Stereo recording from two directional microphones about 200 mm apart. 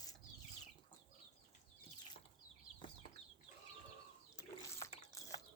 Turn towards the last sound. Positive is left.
turn(degrees=15)  # may be behind; listen again after turning